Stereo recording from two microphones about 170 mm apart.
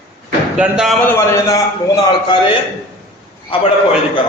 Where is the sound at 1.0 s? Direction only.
15° left (ahead or behind).